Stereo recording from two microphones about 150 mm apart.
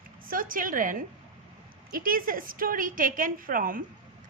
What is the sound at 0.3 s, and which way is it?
A woman's voice, 70° right (ahead or behind).